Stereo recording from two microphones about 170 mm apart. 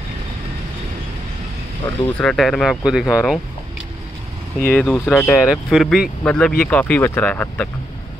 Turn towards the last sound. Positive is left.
turn(degrees=10)  # may be behind; listen again after turning